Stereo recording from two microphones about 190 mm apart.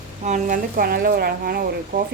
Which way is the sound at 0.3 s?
40° right (ahead or behind).